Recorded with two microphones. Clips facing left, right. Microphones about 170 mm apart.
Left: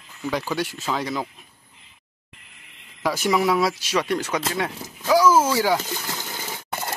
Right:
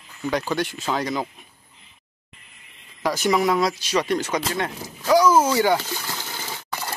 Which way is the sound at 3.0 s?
5° left (ahead or behind).